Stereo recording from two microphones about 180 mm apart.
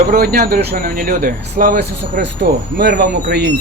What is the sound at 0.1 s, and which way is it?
Speech, 60° right (ahead or behind).